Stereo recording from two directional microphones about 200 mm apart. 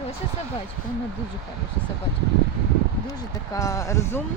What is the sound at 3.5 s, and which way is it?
Speech, 15° left (ahead or behind).